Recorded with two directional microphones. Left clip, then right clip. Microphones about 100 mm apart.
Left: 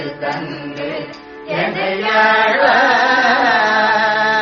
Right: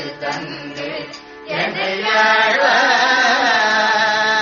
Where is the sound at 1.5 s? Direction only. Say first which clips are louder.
Left 2 dB; 40° right (ahead or behind).